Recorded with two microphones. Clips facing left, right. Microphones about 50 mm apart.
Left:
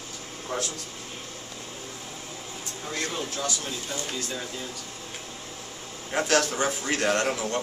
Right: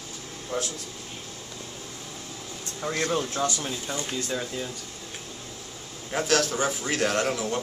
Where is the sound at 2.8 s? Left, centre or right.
Right.